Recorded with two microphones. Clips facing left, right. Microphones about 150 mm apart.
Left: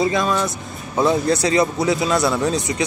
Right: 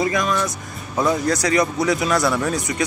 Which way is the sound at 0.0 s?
25° left (ahead or behind).